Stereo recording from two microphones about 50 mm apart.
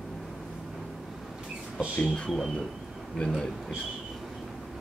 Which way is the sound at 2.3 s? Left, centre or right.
Centre.